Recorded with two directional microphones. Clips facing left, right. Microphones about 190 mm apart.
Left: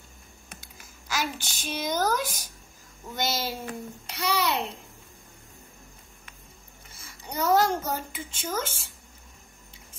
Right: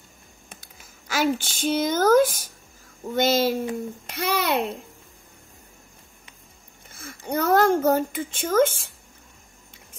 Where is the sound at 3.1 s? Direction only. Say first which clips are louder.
Right 10 dB; 55° right (ahead or behind).